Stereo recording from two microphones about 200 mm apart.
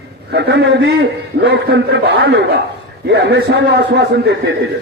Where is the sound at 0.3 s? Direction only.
50° right (ahead or behind).